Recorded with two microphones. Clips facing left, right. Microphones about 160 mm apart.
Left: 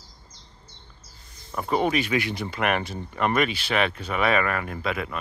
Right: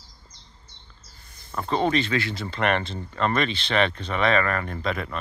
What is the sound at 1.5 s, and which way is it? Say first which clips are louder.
Speech: even; 10° left (ahead or behind).